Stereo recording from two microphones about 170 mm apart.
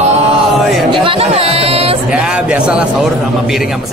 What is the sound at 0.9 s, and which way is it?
Speech, 30° right (ahead or behind).